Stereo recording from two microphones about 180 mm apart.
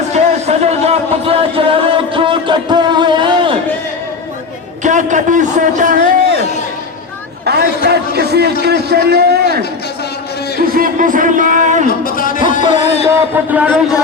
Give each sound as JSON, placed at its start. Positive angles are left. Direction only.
{"t": 0.1, "sound": "music", "side_deg": -35}
{"t": 4.8, "sound": "a man's voice", "side_deg": -45}
{"t": 7.4, "sound": "a sound", "side_deg": -65}
{"t": 8.6, "sound": "a man's voice", "side_deg": -65}
{"t": 12.0, "sound": "music", "side_deg": 50}
{"t": 13.3, "sound": "speech", "side_deg": -10}